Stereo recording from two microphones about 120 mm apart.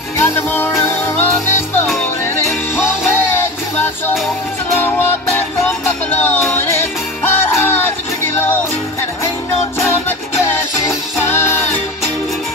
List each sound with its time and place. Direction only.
0.2 s music: 20° left (ahead or behind)
4.7 s music: 15° left (ahead or behind)